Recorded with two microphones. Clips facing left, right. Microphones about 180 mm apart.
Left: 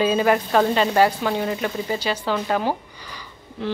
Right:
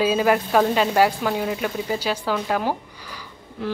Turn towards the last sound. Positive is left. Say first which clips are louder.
# left 1 dB
turn(degrees=-5)  # may be behind; listen again after turning